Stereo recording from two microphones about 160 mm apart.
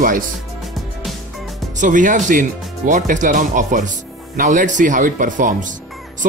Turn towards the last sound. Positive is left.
turn(degrees=-60)  # may be behind; listen again after turning